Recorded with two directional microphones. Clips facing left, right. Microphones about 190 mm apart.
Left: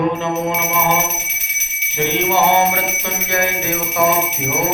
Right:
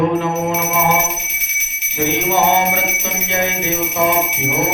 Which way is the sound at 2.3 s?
15° right (ahead or behind).